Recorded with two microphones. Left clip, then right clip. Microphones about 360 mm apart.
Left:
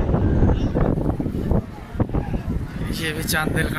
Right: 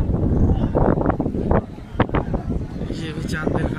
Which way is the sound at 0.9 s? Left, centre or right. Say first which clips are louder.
Right 4 dB; right.